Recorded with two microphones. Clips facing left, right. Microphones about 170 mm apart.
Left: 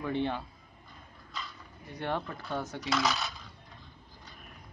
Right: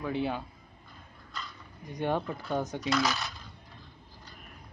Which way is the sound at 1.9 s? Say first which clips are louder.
Right 4 dB; 15° right (ahead or behind).